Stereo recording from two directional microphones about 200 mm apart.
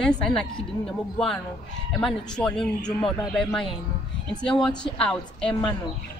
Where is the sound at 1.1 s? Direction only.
5° left (ahead or behind).